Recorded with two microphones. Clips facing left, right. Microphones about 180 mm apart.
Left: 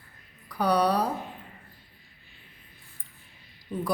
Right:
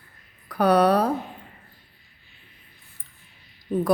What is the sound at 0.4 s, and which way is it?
Speech, 55° right (ahead or behind).